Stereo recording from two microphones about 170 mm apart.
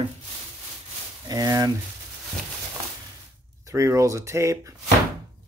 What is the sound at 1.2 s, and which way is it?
Speech, 20° right (ahead or behind).